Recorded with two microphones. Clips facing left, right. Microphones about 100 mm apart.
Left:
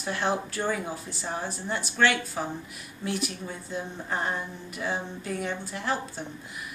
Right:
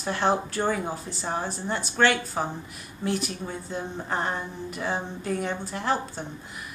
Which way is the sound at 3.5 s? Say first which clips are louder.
Right 2 dB; 40° right (ahead or behind).